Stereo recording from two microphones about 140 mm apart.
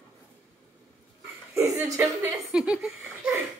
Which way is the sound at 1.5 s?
20° right (ahead or behind).